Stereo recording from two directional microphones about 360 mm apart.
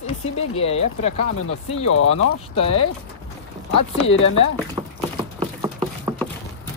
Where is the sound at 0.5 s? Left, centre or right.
Centre.